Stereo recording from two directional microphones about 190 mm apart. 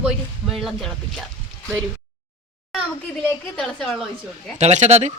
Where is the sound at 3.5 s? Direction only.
Centre (ahead or behind).